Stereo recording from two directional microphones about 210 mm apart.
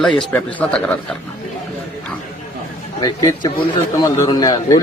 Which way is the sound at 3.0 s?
20° left (ahead or behind).